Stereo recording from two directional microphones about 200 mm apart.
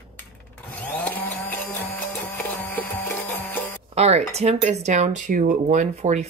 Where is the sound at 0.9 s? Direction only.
10° left (ahead or behind).